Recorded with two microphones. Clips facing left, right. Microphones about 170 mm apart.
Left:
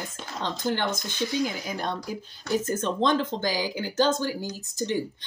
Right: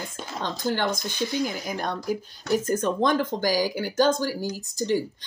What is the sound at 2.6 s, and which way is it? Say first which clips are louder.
Speech: right 1 dB; 25° left (ahead or behind).